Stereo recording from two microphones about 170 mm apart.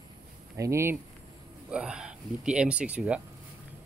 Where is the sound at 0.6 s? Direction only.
15° right (ahead or behind).